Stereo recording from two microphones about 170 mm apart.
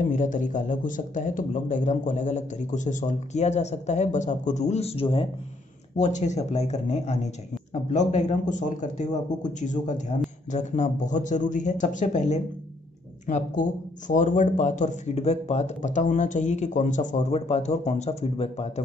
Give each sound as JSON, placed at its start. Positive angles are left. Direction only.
{"t": 0.0, "sound": "a man's voice", "side_deg": 50}
{"t": 5.9, "sound": "a man's voice", "side_deg": 45}